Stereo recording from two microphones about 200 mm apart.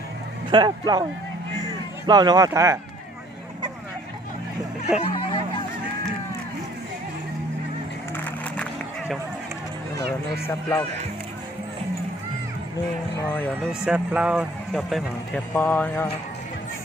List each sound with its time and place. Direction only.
0.5 s speech: 20° right (ahead or behind)
2.0 s speech: 20° right (ahead or behind)
4.9 s hubbub: 30° left (ahead or behind)
10.4 s speech: 15° left (ahead or behind)
13.8 s a man's voice: 5° right (ahead or behind)